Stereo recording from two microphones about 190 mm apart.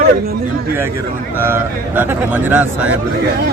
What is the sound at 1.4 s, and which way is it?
Speech, 10° right (ahead or behind).